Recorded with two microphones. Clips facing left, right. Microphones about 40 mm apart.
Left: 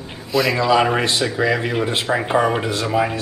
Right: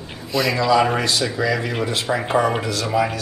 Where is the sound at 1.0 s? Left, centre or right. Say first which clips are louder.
Left 2 dB; left.